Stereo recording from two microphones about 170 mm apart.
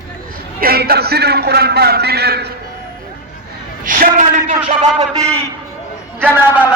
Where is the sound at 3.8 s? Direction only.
50° right (ahead or behind).